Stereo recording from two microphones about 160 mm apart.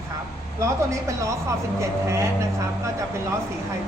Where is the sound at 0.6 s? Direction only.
20° right (ahead or behind).